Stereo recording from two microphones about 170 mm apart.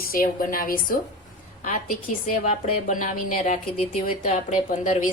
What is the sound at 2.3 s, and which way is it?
A woman's voice, 50° left (ahead or behind).